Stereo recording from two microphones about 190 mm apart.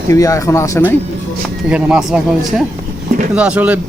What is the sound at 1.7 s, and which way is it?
Speech, 5° right (ahead or behind).